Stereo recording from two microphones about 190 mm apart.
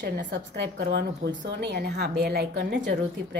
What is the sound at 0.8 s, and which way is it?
Speech, 65° right (ahead or behind).